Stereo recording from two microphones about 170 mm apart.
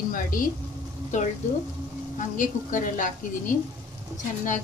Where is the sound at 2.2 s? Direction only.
50° left (ahead or behind).